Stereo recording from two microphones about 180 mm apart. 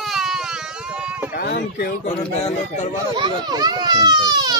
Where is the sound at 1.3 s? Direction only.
60° left (ahead or behind).